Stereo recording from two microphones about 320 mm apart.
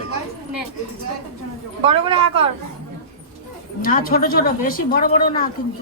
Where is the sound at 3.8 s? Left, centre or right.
Left.